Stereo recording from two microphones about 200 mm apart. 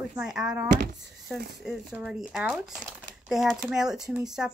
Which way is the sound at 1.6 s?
5° right (ahead or behind).